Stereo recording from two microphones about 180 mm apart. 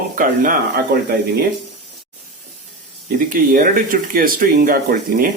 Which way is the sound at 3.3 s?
50° right (ahead or behind).